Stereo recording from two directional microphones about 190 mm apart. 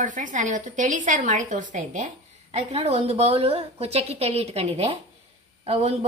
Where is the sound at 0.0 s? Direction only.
40° right (ahead or behind).